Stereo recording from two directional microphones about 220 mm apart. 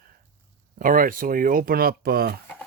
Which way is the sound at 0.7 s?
40° right (ahead or behind).